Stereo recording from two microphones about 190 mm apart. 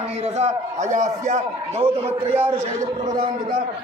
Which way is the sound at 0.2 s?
35° right (ahead or behind).